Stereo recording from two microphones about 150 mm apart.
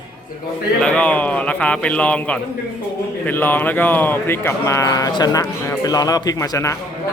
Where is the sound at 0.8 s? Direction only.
10° left (ahead or behind).